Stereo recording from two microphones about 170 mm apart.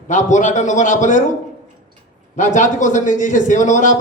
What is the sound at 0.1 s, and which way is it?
A man's voice, 45° left (ahead or behind).